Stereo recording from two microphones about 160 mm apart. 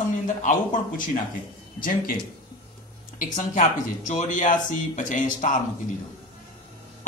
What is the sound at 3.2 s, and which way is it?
Speech, 55° left (ahead or behind).